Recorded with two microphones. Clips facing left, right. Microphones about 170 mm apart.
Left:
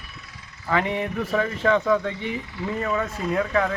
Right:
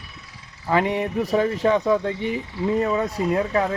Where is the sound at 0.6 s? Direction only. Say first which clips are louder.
Right 3 dB; 20° right (ahead or behind).